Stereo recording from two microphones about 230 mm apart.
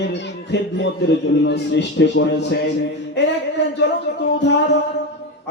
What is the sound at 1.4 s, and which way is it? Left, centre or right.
Speech, left.